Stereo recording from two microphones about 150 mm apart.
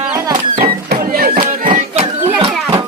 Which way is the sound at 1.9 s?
40° right (ahead or behind).